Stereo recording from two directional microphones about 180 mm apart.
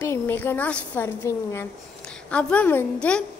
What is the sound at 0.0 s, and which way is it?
A woman's voice, 10° left (ahead or behind).